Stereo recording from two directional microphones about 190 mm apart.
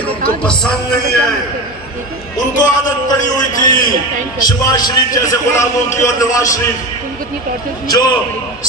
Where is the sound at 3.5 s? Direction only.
45° left (ahead or behind).